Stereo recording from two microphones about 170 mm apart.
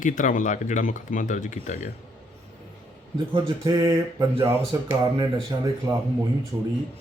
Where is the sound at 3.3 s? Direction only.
25° right (ahead or behind).